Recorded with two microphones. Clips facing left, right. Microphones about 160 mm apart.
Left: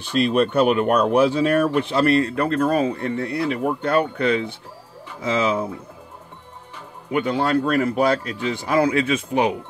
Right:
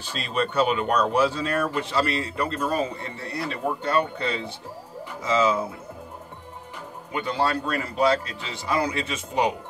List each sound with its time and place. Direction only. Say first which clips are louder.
0.0 s speech: left 9 dB; 60° left (ahead or behind)
7.1 s speech: left 5 dB; 60° left (ahead or behind)